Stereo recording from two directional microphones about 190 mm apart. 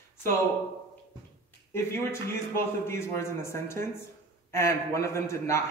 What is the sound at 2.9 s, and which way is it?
A man's voice, 15° left (ahead or behind).